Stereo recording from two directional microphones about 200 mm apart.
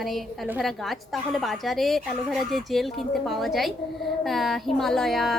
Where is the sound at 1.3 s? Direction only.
Centre (ahead or behind).